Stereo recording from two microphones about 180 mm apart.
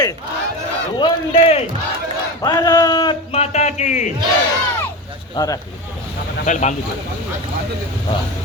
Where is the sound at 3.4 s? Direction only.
40° left (ahead or behind).